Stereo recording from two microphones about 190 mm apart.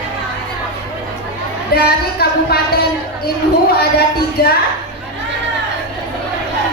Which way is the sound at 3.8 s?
55° left (ahead or behind).